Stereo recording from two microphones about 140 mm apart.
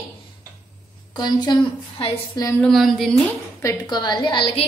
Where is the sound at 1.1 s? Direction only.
30° left (ahead or behind).